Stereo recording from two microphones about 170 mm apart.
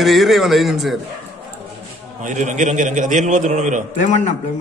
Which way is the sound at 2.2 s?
45° right (ahead or behind).